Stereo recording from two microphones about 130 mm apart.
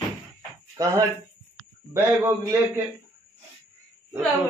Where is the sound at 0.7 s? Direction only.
25° right (ahead or behind).